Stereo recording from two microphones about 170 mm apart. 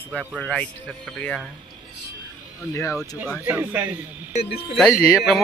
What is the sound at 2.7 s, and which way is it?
Speech, 15° left (ahead or behind).